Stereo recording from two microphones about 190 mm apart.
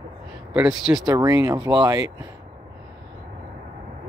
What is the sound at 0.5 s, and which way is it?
Speech, 5° right (ahead or behind).